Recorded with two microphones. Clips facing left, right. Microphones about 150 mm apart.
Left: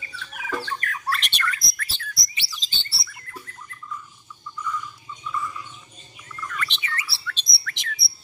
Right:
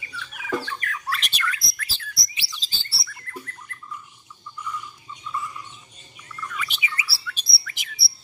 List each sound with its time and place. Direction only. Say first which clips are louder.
0.1 s bird: right 3 dB; 40° left (ahead or behind)
1.1 s chirp: left 1 dB; centre (ahead or behind)
6.3 s bird: left 1 dB; 5° right (ahead or behind)